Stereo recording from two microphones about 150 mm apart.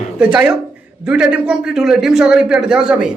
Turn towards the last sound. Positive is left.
turn(degrees=-5)  # may be behind; listen again after turning